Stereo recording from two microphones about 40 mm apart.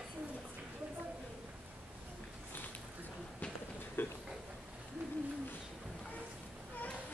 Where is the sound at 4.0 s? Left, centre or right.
Left.